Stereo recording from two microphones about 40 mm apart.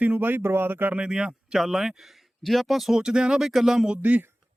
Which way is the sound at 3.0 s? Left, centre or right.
Centre.